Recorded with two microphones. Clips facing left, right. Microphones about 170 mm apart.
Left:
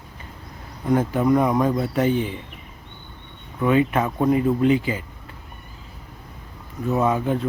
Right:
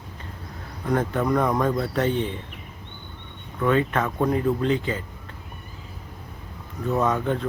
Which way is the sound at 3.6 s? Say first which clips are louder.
Left 3 dB; 10° left (ahead or behind).